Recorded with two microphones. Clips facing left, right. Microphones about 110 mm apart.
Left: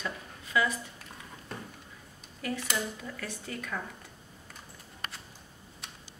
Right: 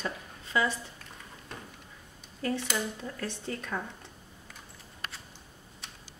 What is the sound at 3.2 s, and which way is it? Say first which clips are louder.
Speech: right 4 dB; 30° right (ahead or behind).